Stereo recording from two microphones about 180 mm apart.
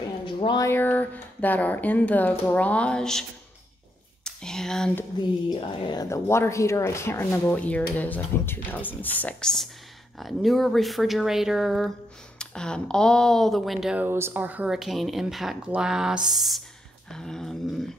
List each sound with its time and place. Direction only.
0.3 s speech: 25° left (ahead or behind)
0.7 s speech: 10° left (ahead or behind)
4.2 s a sound: 5° left (ahead or behind)
5.5 s speech: 25° left (ahead or behind); by 17.9 s 5° left (ahead or behind)